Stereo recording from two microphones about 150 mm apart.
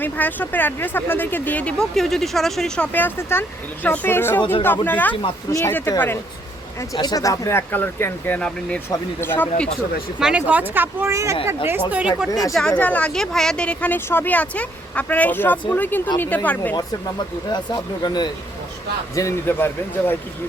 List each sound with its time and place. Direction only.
0.0 s speech: 10° left (ahead or behind)
10.2 s speech: 5° right (ahead or behind)
12.5 s speech: 5° left (ahead or behind)
16.7 s speech: 30° left (ahead or behind)
19.1 s speech: 20° left (ahead or behind)